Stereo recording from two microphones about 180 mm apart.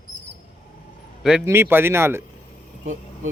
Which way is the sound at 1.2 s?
10° right (ahead or behind).